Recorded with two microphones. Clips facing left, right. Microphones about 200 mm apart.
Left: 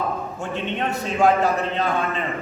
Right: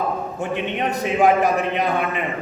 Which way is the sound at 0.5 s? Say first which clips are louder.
Right 1 dB; 15° right (ahead or behind).